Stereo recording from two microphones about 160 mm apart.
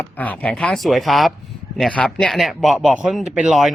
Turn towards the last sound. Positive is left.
turn(degrees=-5)  # may be behind; listen again after turning